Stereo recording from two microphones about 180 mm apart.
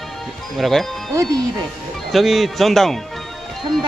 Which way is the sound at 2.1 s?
Centre (ahead or behind).